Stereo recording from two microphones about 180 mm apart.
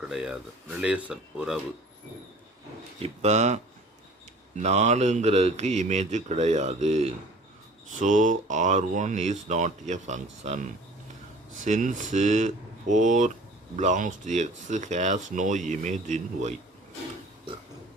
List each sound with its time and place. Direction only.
0.1 s speech: centre (ahead or behind)
3.0 s a man's voice: 35° right (ahead or behind)